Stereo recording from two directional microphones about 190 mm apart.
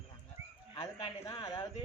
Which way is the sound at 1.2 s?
20° left (ahead or behind).